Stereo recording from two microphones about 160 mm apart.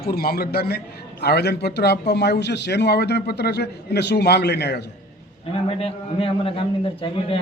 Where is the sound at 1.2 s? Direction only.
90° left.